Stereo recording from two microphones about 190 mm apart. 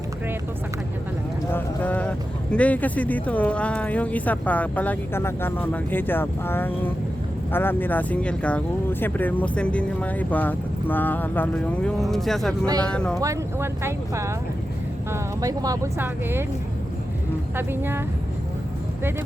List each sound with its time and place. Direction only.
1.5 s speech: 10° left (ahead or behind)
13.1 s speech: 15° right (ahead or behind)
17.6 s speech: 10° right (ahead or behind)